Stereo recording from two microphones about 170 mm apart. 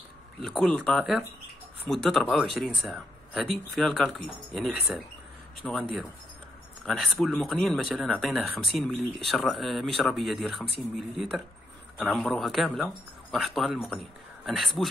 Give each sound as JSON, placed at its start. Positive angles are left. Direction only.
{"t": 0.4, "sound": "speech", "side_deg": 5}